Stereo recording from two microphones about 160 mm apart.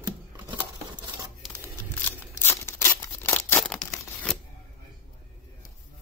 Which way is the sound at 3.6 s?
5° left (ahead or behind).